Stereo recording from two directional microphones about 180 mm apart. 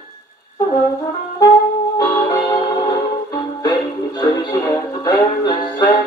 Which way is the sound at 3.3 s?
20° left (ahead or behind).